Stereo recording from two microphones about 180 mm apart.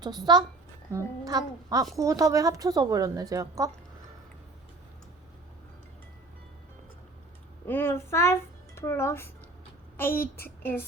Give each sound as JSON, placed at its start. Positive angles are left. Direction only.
{"t": 0.0, "sound": "a woman's voice", "side_deg": -20}
{"t": 7.7, "sound": "a child's voice", "side_deg": 15}